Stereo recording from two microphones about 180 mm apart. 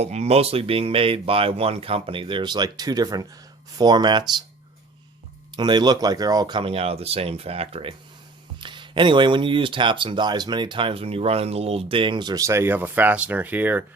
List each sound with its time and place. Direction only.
0.0 s speech: 35° right (ahead or behind)
5.5 s speech: 25° right (ahead or behind)